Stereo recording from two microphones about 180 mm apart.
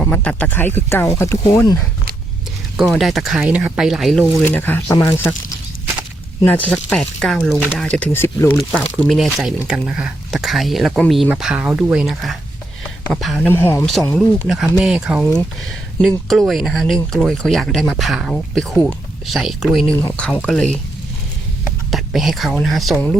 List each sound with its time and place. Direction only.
0.0 s speech: 5° left (ahead or behind)
2.7 s speech: centre (ahead or behind)
4.4 s speech: 10° left (ahead or behind)
6.4 s speech: 10° left (ahead or behind)
8.5 s speech: centre (ahead or behind)
13.5 s speech: 10° left (ahead or behind)
14.3 s speech: centre (ahead or behind)
21.8 s speech: centre (ahead or behind)